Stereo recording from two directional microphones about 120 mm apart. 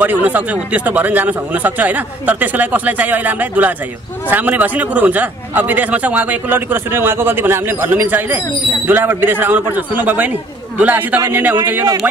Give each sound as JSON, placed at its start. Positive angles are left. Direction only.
{"t": 0.0, "sound": "a man's voice", "side_deg": -15}